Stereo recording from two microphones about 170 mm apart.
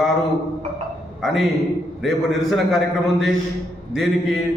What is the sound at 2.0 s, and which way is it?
Speech, centre (ahead or behind).